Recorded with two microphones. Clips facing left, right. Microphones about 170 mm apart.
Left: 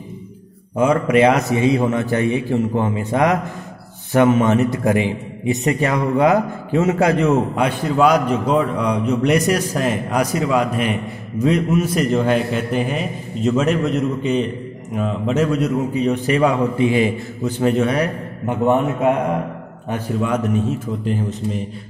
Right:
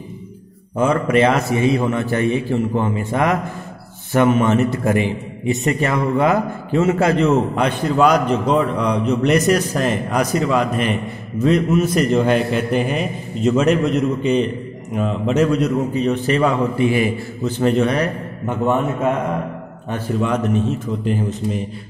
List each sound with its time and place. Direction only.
0.7 s a man's voice: 10° left (ahead or behind)
17.6 s a man's voice: 5° left (ahead or behind)